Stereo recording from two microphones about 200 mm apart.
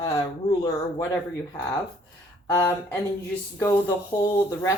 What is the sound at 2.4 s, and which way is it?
Speech, 10° left (ahead or behind).